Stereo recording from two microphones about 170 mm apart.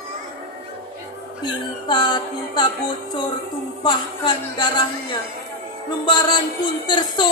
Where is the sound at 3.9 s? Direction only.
25° left (ahead or behind).